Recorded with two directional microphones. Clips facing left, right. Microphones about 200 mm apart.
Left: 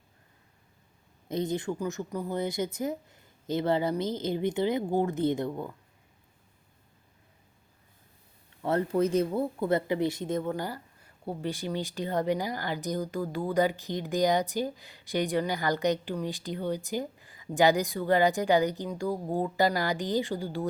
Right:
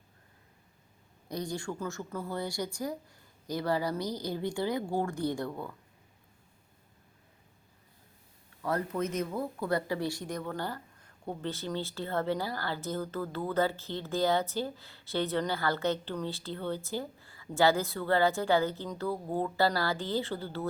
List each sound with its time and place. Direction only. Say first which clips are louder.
1.3 s a woman's voice: left 6 dB; 20° left (ahead or behind)
8.6 s a woman's voice: left 6 dB; 30° left (ahead or behind)
10.5 s speech: left 3 dB; 10° left (ahead or behind)